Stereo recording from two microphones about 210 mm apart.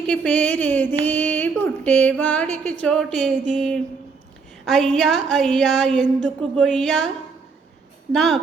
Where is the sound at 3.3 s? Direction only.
35° right (ahead or behind).